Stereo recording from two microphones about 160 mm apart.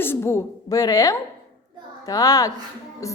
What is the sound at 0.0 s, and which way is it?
A woman's voice, 15° left (ahead or behind).